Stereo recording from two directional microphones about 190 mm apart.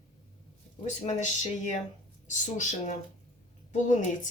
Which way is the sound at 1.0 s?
40° left (ahead or behind).